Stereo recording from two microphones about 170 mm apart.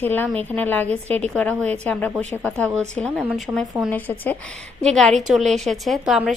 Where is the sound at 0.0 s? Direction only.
10° left (ahead or behind).